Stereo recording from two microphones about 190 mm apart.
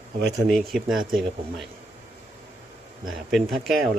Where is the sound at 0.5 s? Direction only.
Centre (ahead or behind).